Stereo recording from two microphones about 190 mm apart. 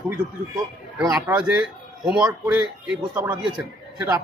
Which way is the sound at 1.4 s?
5° right (ahead or behind).